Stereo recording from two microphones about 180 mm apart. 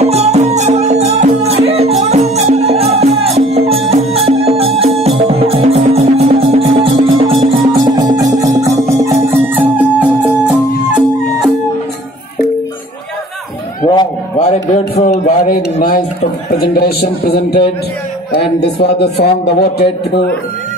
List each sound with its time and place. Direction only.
0.0 s music: 35° right (ahead or behind); by 10.3 s 10° right (ahead or behind)
13.8 s a sound: 30° left (ahead or behind)
16.7 s a man's voice: 60° left (ahead or behind)